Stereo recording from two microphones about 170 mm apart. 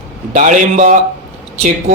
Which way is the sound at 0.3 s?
50° right (ahead or behind).